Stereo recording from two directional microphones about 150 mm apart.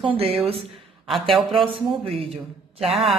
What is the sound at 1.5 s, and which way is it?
Speech, 35° right (ahead or behind).